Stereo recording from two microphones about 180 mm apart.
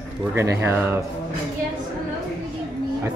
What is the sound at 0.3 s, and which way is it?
Speech, 15° right (ahead or behind).